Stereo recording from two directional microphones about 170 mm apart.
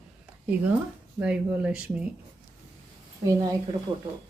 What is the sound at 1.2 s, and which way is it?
Speech, 5° right (ahead or behind).